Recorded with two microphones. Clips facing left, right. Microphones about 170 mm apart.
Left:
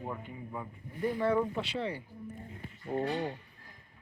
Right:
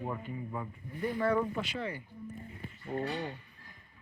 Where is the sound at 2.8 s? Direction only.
15° left (ahead or behind).